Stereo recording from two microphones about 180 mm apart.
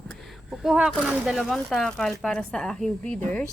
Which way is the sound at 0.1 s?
Centre (ahead or behind).